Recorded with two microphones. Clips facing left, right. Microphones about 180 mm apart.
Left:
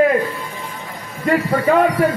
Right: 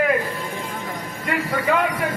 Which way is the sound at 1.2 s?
45° left (ahead or behind).